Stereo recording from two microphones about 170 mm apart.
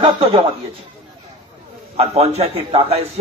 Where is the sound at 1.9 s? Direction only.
35° right (ahead or behind).